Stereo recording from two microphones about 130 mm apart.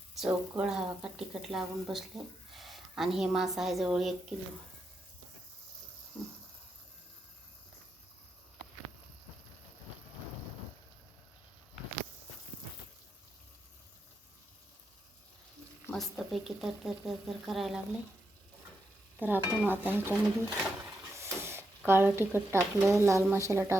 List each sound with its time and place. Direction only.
0.1 s speech: 5° right (ahead or behind)
16.0 s speech: centre (ahead or behind)
19.2 s speech: 15° right (ahead or behind)